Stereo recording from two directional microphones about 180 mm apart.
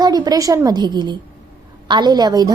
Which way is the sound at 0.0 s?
20° right (ahead or behind).